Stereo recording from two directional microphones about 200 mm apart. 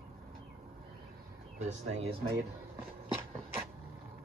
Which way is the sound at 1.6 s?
35° right (ahead or behind).